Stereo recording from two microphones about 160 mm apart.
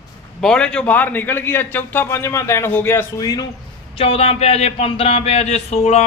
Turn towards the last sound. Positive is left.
turn(degrees=40)  # may be behind; listen again after turning